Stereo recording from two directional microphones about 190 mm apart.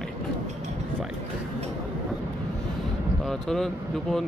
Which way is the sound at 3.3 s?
Centre (ahead or behind).